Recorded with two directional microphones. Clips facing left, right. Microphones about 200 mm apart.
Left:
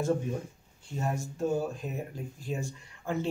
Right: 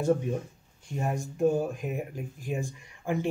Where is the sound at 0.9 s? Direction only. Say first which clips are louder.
Right 2 dB; 15° right (ahead or behind).